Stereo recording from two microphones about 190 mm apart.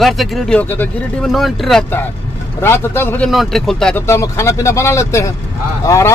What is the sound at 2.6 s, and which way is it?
Speech, 10° left (ahead or behind).